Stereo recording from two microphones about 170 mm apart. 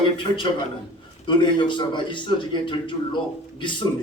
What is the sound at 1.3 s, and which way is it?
A man's voice, 30° left (ahead or behind).